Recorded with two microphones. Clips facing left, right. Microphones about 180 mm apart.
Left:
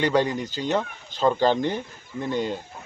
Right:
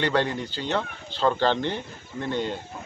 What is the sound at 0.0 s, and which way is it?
Speech, 10° left (ahead or behind).